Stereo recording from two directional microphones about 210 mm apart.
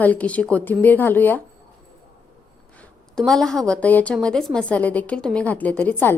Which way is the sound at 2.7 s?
5° left (ahead or behind).